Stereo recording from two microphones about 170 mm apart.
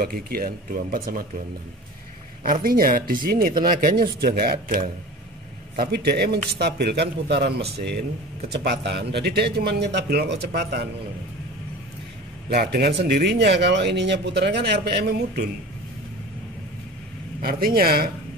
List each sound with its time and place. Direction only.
0.0 s speech: 60° right (ahead or behind)
2.4 s speech: 60° right (ahead or behind)
5.8 s a man's voice: 70° right (ahead or behind)
12.4 s speech: 70° right (ahead or behind)
17.4 s speech: 60° right (ahead or behind)